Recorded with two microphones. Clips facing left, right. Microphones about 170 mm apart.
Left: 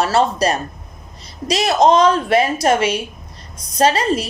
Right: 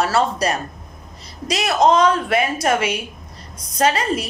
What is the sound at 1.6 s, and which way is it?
A woman's voice, 20° left (ahead or behind).